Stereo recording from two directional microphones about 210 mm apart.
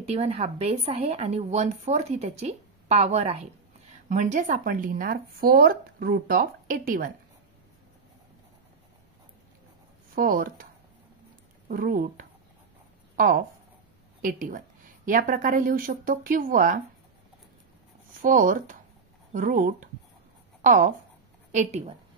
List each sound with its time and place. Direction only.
0.1 s speech: 30° right (ahead or behind)
10.1 s speech: 40° right (ahead or behind)
18.2 s a woman's voice: 40° right (ahead or behind)